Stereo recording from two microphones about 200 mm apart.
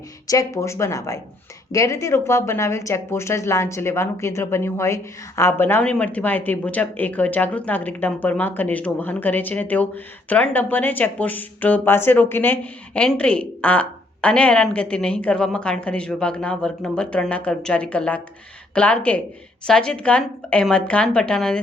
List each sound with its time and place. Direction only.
0.3 s a woman's voice: 15° left (ahead or behind)